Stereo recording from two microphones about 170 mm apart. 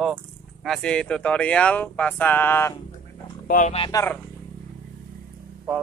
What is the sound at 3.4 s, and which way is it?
Speech, 50° left (ahead or behind).